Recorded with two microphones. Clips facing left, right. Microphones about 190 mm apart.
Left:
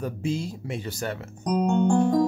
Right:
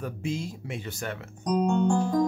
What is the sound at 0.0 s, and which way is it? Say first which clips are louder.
Speech: left 3 dB; 35° left (ahead or behind).